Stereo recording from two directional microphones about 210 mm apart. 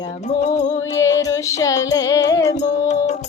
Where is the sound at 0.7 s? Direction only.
15° left (ahead or behind).